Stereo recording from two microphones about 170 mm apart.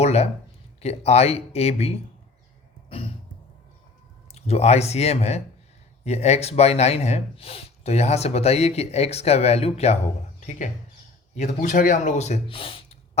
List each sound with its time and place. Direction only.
0.0 s a sound: 40° left (ahead or behind)
0.8 s speech: 40° left (ahead or behind)
4.4 s speech: 40° left (ahead or behind)